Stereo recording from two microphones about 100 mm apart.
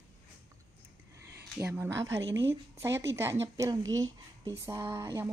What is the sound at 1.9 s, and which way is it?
Speech, 30° right (ahead or behind).